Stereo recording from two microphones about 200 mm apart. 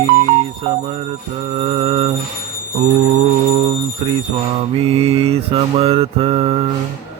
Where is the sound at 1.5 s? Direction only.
30° right (ahead or behind).